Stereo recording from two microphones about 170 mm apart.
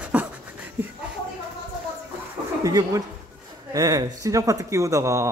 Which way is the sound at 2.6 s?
20° right (ahead or behind).